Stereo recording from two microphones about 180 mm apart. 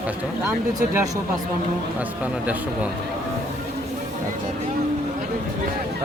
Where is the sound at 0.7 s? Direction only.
20° right (ahead or behind).